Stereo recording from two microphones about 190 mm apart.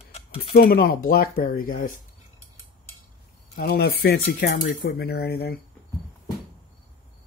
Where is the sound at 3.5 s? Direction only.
55° left (ahead or behind).